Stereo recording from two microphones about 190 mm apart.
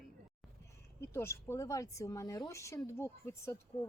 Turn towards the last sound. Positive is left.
turn(degrees=15)  # may be behind; listen again after turning